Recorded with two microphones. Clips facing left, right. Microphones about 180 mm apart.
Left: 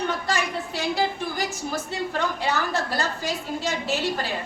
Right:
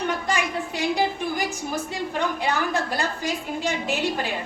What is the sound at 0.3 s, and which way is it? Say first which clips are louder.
A woman's voice: right 1 dB; 15° right (ahead or behind).